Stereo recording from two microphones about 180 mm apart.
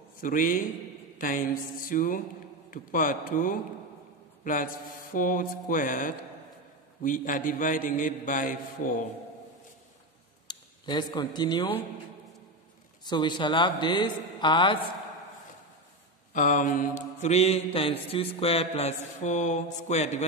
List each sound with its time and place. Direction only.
0.2 s a man's voice: 50° left (ahead or behind)
10.5 s speech: 25° left (ahead or behind)
13.0 s a man's voice: 25° left (ahead or behind)
16.3 s a man's voice: 45° left (ahead or behind)
17.2 s mantra: 35° left (ahead or behind)